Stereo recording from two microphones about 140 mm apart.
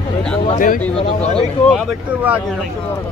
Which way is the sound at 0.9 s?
45° left (ahead or behind).